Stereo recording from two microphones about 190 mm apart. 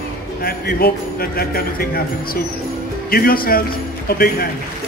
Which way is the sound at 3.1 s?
50° left (ahead or behind).